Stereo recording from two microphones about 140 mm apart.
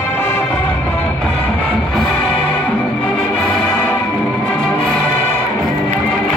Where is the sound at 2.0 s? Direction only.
5° left (ahead or behind).